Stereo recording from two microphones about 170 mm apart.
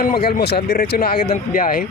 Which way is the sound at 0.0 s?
65° left (ahead or behind).